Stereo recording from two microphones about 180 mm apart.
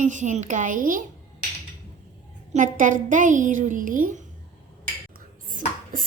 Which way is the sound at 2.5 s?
45° right (ahead or behind).